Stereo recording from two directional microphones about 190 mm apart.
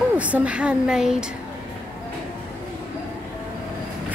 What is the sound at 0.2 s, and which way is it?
Speech, 5° right (ahead or behind).